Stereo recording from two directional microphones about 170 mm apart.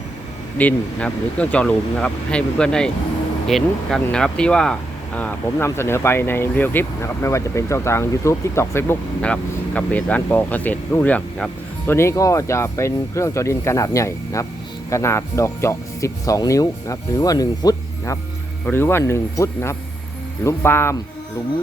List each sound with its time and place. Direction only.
0.6 s speech: 5° left (ahead or behind)